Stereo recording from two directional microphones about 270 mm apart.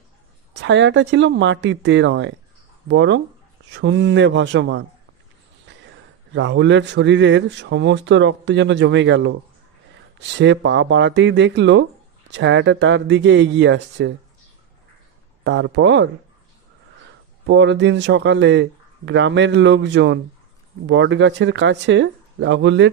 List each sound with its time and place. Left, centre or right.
0.6 s a man's voice: right
15.4 s speech: right
17.5 s speech: right